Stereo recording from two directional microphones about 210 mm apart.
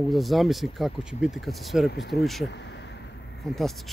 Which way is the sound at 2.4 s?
55° left (ahead or behind).